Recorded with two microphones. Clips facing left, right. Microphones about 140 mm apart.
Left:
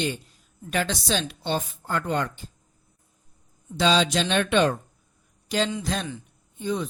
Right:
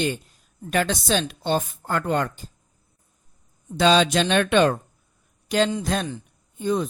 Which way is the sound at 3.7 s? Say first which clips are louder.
Right 4 dB; 55° right (ahead or behind).